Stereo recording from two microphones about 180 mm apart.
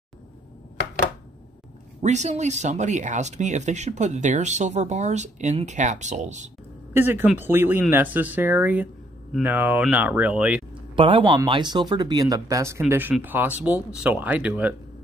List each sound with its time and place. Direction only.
2.0 s speech: 40° right (ahead or behind)
6.9 s speech: 10° right (ahead or behind)
10.7 s speech: 30° right (ahead or behind); by 14.8 s 5° right (ahead or behind)